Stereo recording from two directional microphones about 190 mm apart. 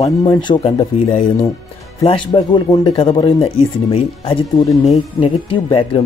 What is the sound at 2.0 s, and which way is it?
Speech, 25° left (ahead or behind).